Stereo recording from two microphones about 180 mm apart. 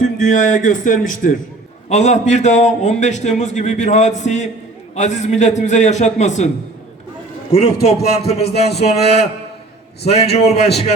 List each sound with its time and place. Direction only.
0.0 s a man's voice: 45° left (ahead or behind)
7.5 s a man's voice: 35° left (ahead or behind)
10.1 s a man's voice: 35° left (ahead or behind)